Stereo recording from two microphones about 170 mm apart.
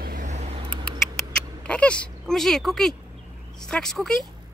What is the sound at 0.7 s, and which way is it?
Mouse, 5° left (ahead or behind).